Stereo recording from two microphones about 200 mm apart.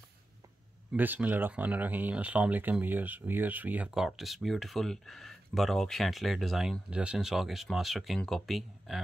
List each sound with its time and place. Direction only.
0.9 s speech: 10° right (ahead or behind)